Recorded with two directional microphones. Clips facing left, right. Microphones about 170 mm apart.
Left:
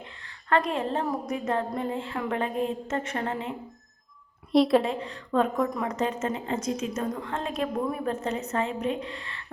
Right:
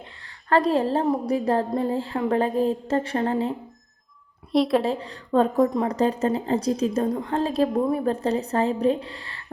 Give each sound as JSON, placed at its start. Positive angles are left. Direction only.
{"t": 0.0, "sound": "a woman's voice", "side_deg": -35}
{"t": 4.5, "sound": "a woman's voice", "side_deg": 0}
{"t": 4.8, "sound": "a woman's voice", "side_deg": -35}